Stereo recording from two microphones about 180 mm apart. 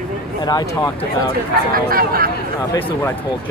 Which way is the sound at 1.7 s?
55° right (ahead or behind).